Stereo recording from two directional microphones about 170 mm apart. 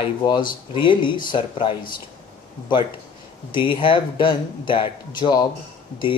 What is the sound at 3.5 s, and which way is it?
Speech, 30° left (ahead or behind).